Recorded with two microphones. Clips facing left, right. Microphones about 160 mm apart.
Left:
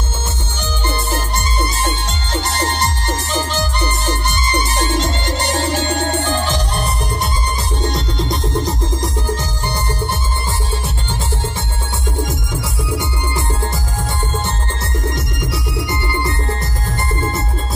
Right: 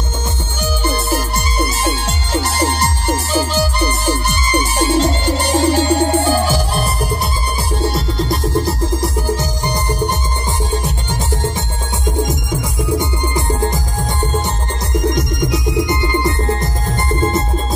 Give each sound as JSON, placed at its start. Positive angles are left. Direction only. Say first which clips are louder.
{"t": 0.8, "sound": "music", "louder": "right 2 dB", "side_deg": -10}
{"t": 12.9, "sound": "music", "louder": "right 4 dB", "side_deg": -15}
{"t": 15.0, "sound": "music", "louder": "right 8 dB", "side_deg": -15}